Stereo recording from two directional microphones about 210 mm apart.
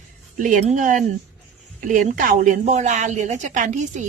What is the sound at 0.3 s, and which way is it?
A woman's voice, 40° right (ahead or behind).